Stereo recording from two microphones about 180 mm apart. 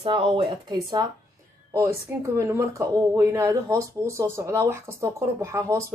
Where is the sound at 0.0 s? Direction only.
35° right (ahead or behind).